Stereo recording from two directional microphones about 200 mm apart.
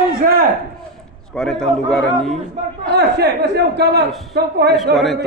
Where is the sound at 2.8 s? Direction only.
55° right (ahead or behind).